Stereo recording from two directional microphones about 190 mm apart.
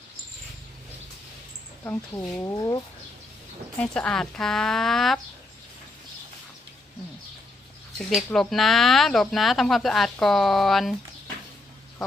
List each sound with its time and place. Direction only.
1.8 s speech: 15° left (ahead or behind)
3.8 s speech: 5° left (ahead or behind)
7.9 s speech: centre (ahead or behind)